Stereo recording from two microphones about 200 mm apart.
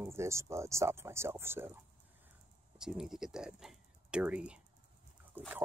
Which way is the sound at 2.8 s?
5° right (ahead or behind).